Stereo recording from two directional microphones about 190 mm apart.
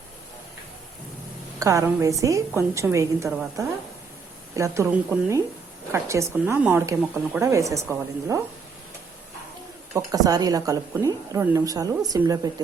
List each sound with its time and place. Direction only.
1.5 s a woman's voice: 15° right (ahead or behind)
4.5 s a woman's voice: 15° right (ahead or behind)
9.9 s a woman's voice: 20° right (ahead or behind)